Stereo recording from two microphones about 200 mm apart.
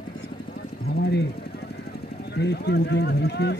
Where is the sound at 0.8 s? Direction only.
55° left (ahead or behind).